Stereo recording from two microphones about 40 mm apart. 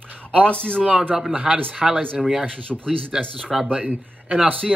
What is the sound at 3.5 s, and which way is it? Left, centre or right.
Speech, centre.